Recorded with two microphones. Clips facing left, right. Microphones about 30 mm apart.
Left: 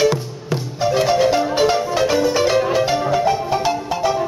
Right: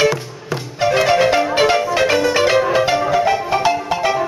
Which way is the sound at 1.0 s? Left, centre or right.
Right.